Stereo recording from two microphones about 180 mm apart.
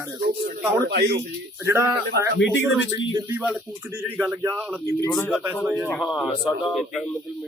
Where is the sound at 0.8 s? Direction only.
65° right (ahead or behind).